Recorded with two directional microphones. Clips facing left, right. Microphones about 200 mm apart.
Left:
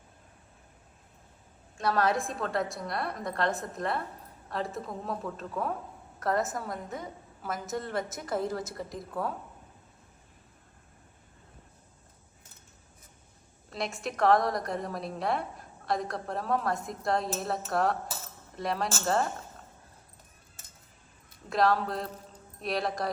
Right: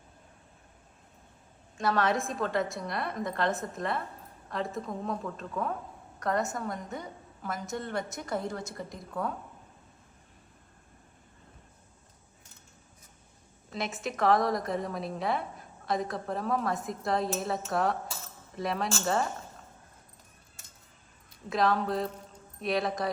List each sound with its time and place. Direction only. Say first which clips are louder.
1.8 s a woman's voice: even; centre (ahead or behind)
13.7 s a woman's voice: even; centre (ahead or behind)
21.5 s a woman's voice: left 1 dB; centre (ahead or behind)